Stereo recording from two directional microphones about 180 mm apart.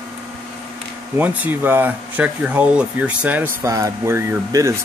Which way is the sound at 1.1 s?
10° right (ahead or behind).